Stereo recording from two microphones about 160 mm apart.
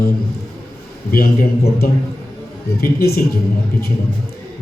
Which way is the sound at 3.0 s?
75° left (ahead or behind).